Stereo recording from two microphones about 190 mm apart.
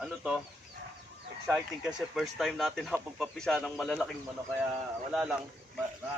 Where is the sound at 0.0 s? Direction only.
Centre (ahead or behind).